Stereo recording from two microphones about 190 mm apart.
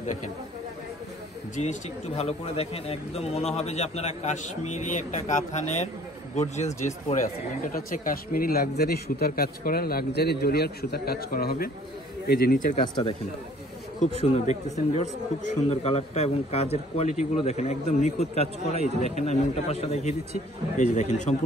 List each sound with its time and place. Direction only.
1.6 s a man's voice: 35° left (ahead or behind)
7.6 s speech: 45° left (ahead or behind)
14.2 s a man's voice: 35° left (ahead or behind)